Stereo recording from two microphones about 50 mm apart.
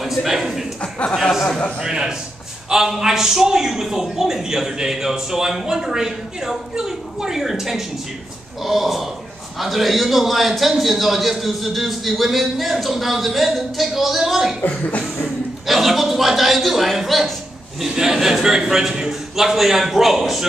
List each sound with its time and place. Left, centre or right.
0.0 s a man's voice: centre
1.8 s a man's voice: centre
14.6 s speech: left
15.2 s a sound: centre
17.7 s a man's voice: centre